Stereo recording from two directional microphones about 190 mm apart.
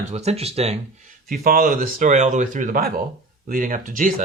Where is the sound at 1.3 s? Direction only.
50° right (ahead or behind).